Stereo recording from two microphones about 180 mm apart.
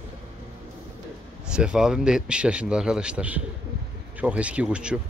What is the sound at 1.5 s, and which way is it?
A man's voice, 5° right (ahead or behind).